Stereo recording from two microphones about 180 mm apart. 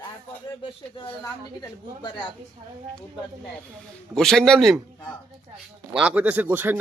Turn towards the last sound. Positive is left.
turn(degrees=-10)  # may be behind; listen again after turning